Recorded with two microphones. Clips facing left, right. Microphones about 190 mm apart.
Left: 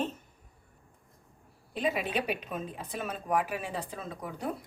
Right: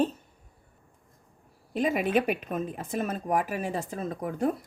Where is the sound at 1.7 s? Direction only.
45° right (ahead or behind).